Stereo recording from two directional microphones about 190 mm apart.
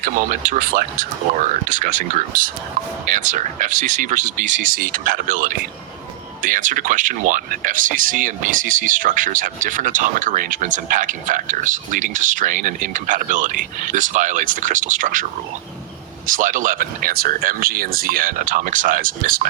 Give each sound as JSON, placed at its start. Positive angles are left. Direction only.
{"t": 0.0, "sound": "speech", "side_deg": -45}